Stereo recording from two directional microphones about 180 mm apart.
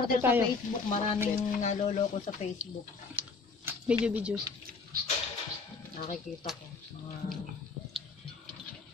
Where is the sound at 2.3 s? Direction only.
25° left (ahead or behind).